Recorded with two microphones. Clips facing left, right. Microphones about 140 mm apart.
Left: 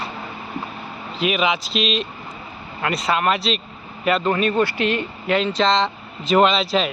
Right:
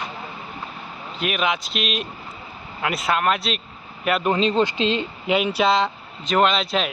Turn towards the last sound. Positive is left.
turn(degrees=0)  # may be behind; listen again after turning